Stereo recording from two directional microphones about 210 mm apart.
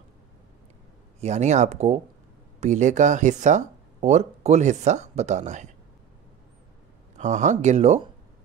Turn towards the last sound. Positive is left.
turn(degrees=-35)  # may be behind; listen again after turning